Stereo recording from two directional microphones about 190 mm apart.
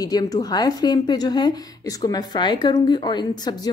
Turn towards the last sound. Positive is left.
turn(degrees=20)  # may be behind; listen again after turning